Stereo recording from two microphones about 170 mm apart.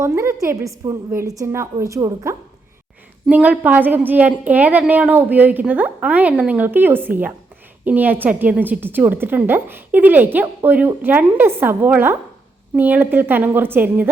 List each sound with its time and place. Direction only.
0.0 s a woman's voice: 15° right (ahead or behind)
3.2 s a woman's voice: 5° right (ahead or behind)